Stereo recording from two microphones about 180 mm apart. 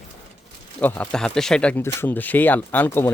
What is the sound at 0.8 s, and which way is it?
A man's voice, 10° left (ahead or behind).